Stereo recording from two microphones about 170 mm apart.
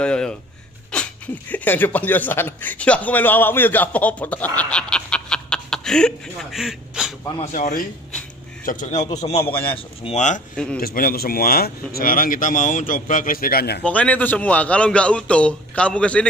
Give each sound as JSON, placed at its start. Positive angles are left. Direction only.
{"t": 0.0, "sound": "speech", "side_deg": 5}
{"t": 7.3, "sound": "a man's voice", "side_deg": 45}
{"t": 10.5, "sound": "a man's voice", "side_deg": 5}
{"t": 10.8, "sound": "speech", "side_deg": 60}
{"t": 13.8, "sound": "a man's voice", "side_deg": 10}